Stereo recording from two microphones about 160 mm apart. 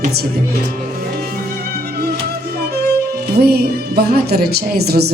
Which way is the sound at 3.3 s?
80° right.